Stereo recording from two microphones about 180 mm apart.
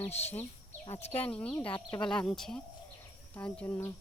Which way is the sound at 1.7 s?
25° left (ahead or behind).